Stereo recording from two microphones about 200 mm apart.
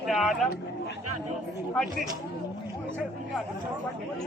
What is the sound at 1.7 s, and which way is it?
Speech, centre (ahead or behind).